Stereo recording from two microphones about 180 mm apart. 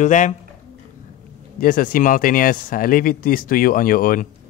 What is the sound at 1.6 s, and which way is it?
Speech, 50° left (ahead or behind).